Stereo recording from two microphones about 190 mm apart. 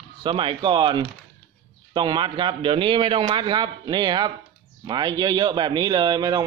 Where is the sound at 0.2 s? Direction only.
25° right (ahead or behind).